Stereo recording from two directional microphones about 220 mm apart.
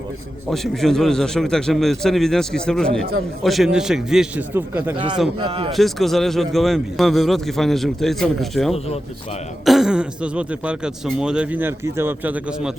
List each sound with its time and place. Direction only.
0.5 s speech: centre (ahead or behind)
5.4 s a man's voice: 25° right (ahead or behind)
5.7 s speech: centre (ahead or behind)